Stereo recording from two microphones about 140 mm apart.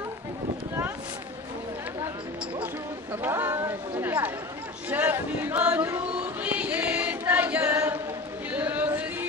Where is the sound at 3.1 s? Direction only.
15° right (ahead or behind).